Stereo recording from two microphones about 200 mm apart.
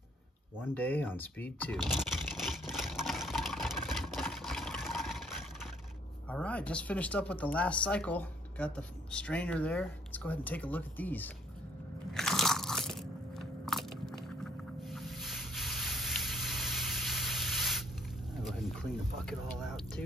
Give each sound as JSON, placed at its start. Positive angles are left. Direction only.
{"t": 0.7, "sound": "speech", "side_deg": 10}
{"t": 1.8, "sound": "a sound", "side_deg": 0}
{"t": 6.2, "sound": "speech", "side_deg": 5}
{"t": 12.1, "sound": "crunch", "side_deg": 0}
{"t": 18.4, "sound": "music", "side_deg": 5}